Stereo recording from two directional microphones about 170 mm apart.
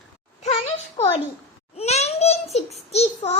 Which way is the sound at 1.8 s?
40° left (ahead or behind).